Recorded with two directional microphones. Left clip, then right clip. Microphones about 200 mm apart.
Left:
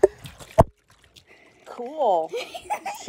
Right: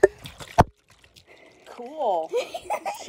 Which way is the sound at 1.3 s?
Centre (ahead or behind).